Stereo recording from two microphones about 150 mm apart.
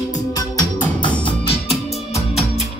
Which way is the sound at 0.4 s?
25° left (ahead or behind).